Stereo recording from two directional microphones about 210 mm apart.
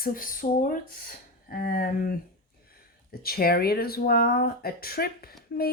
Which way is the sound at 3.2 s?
45° left (ahead or behind).